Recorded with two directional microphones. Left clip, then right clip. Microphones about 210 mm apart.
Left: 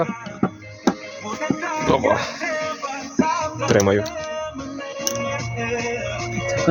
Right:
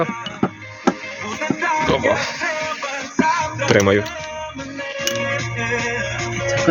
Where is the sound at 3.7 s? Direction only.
5° right (ahead or behind).